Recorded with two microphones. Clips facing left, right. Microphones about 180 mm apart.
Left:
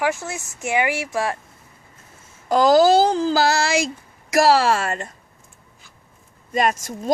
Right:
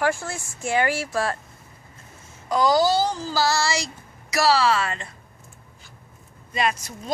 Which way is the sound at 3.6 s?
55° left (ahead or behind).